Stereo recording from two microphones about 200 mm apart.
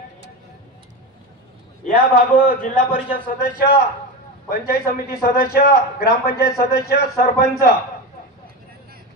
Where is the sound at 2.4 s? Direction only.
45° left (ahead or behind).